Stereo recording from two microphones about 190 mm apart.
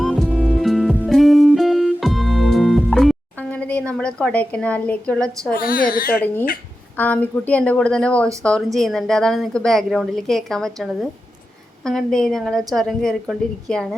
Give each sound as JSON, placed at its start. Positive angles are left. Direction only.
{"t": 0.0, "sound": "music", "side_deg": 5}
{"t": 5.5, "sound": "a child's voice", "side_deg": 50}
{"t": 6.1, "sound": "a woman's voice", "side_deg": 10}